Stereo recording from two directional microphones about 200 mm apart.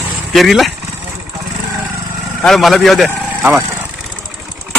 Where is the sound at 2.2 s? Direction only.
Centre (ahead or behind).